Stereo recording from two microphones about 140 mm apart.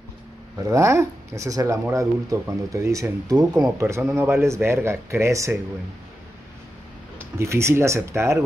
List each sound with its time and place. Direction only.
0.7 s speech: 20° right (ahead or behind)
7.2 s speech: 20° right (ahead or behind)